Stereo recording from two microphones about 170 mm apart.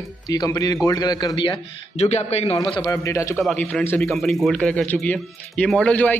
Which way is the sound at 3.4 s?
5° left (ahead or behind).